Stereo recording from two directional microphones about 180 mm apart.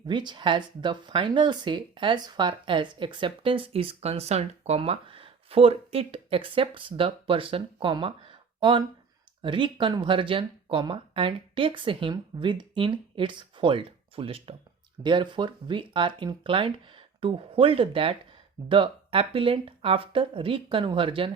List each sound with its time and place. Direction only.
0.1 s speech: 25° right (ahead or behind)